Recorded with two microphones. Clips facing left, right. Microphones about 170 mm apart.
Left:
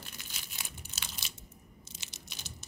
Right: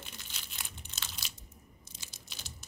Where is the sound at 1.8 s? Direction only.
80° left.